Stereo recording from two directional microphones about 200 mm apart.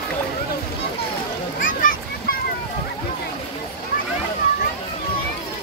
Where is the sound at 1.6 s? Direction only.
45° left (ahead or behind).